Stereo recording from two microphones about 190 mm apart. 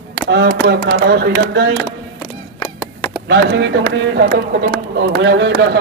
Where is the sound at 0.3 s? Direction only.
65° right (ahead or behind).